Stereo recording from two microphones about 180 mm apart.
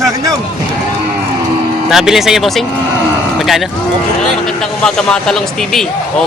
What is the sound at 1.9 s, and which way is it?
Speech, centre (ahead or behind).